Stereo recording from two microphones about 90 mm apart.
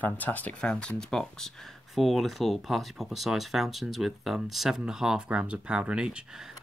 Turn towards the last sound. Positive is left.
turn(degrees=-5)  # may be behind; listen again after turning